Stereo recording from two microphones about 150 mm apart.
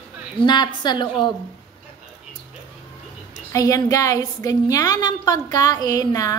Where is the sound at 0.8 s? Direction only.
30° left (ahead or behind).